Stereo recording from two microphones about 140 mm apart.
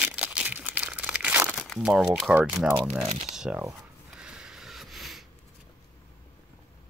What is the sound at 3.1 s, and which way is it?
Speech, 55° right (ahead or behind).